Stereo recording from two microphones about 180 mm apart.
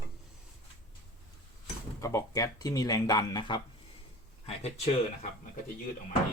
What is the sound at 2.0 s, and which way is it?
Speech, 20° left (ahead or behind).